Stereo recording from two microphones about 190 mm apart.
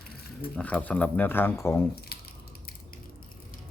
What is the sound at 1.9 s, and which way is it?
Squish, 55° left (ahead or behind).